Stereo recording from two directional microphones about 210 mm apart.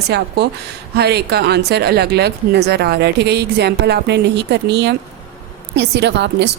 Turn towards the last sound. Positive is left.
turn(degrees=-55)  # may be behind; listen again after turning